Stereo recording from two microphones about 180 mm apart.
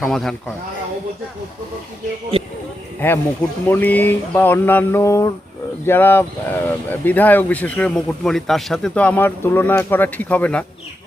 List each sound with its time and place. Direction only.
0.0 s speech: centre (ahead or behind)
2.3 s speech: 30° right (ahead or behind)
3.7 s speech: 10° left (ahead or behind)